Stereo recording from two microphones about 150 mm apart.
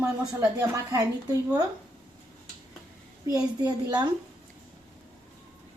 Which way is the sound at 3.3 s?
25° right (ahead or behind).